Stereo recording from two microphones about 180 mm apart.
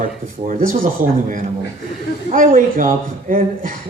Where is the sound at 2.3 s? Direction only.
50° right (ahead or behind).